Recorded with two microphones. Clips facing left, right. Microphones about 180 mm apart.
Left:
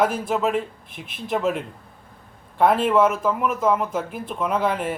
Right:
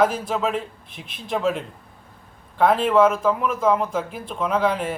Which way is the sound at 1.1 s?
5° left (ahead or behind).